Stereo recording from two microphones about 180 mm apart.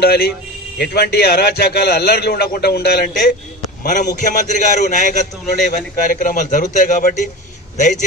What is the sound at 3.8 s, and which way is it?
A man's voice, 45° left (ahead or behind).